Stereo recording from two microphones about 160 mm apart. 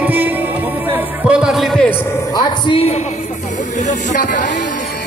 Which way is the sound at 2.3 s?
35° left (ahead or behind).